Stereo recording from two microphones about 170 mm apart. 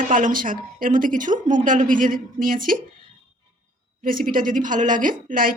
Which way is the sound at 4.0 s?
55° right (ahead or behind).